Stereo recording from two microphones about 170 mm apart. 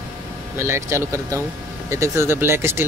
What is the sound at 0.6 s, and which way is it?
Speech, 15° right (ahead or behind).